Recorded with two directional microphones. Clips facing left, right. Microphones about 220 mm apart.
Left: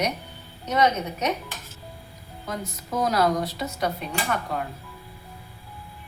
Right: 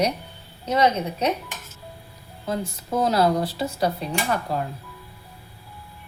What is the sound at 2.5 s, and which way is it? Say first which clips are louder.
Speech: right 5 dB; 30° right (ahead or behind).